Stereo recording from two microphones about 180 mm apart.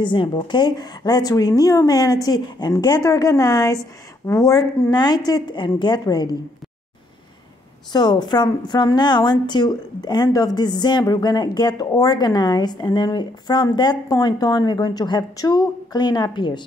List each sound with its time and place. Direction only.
0.0 s a woman's voice: 25° left (ahead or behind)
7.9 s a woman's voice: 25° left (ahead or behind)